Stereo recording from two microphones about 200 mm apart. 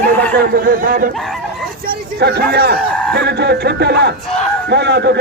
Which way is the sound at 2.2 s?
55° right (ahead or behind).